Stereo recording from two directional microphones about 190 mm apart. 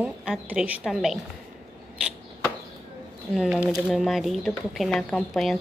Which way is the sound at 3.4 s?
Centre (ahead or behind).